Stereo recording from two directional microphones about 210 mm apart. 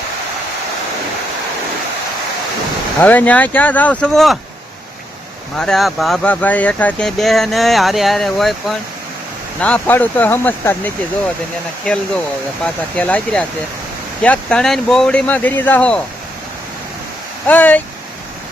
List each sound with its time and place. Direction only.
3.0 s speech: 5° left (ahead or behind)
5.5 s speech: centre (ahead or behind)
12.6 s speech: 5° left (ahead or behind)
17.4 s speech: 10° left (ahead or behind)